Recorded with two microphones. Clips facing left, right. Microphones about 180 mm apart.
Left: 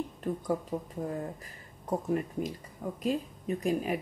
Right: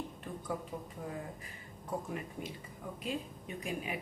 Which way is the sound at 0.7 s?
50° left (ahead or behind).